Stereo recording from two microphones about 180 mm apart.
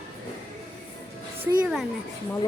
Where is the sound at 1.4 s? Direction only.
5° right (ahead or behind).